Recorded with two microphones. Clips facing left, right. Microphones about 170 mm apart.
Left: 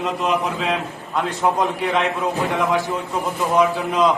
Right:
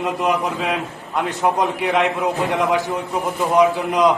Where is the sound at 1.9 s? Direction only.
15° right (ahead or behind).